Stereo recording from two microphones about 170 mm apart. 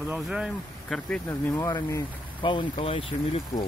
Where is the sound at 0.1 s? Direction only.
5° right (ahead or behind).